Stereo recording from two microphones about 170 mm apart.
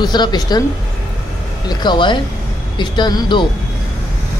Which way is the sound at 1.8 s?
25° left (ahead or behind).